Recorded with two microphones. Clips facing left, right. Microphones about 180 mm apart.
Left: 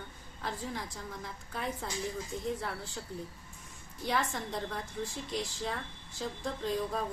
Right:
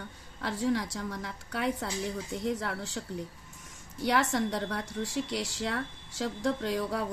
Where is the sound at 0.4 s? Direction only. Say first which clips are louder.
Right 9 dB; 90° right.